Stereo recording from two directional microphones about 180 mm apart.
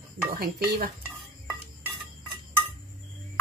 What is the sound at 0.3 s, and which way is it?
Dishes, 55° right (ahead or behind).